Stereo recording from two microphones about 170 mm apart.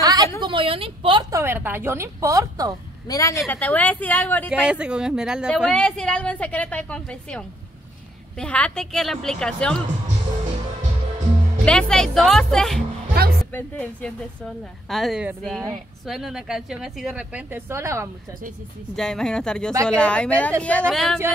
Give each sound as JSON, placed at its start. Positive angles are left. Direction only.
{"t": 0.0, "sound": "a sound", "side_deg": -20}
{"t": 1.3, "sound": "a woman's voice", "side_deg": -15}
{"t": 3.1, "sound": "a woman's voice", "side_deg": 20}
{"t": 4.5, "sound": "a woman's voice", "side_deg": -5}
{"t": 11.6, "sound": "speech", "side_deg": 5}
{"t": 18.9, "sound": "a woman's voice", "side_deg": 5}